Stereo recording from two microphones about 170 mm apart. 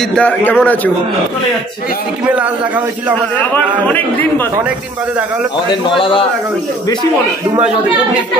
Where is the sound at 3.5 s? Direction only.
10° left (ahead or behind).